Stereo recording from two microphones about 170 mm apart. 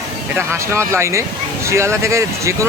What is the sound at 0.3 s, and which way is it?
Speech, 15° right (ahead or behind).